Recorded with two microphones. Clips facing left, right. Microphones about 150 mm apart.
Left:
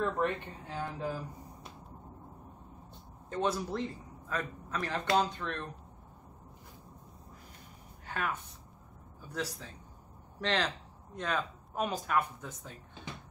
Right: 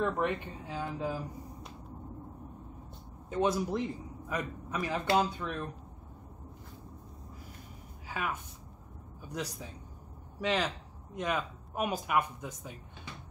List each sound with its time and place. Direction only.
0.0 s speech: 10° right (ahead or behind)
3.3 s a man's voice: 10° right (ahead or behind)
8.1 s a woman's voice: 5° right (ahead or behind)